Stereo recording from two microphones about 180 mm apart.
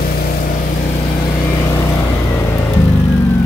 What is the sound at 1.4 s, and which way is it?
Vehicle, 20° left (ahead or behind).